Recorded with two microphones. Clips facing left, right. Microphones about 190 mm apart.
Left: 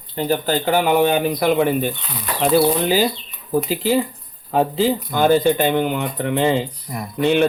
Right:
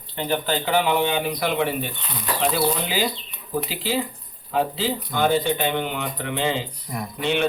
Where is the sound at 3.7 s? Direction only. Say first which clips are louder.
Left 7 dB; 50° left (ahead or behind).